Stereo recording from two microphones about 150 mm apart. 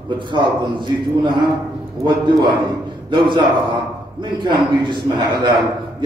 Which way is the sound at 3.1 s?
30° right (ahead or behind).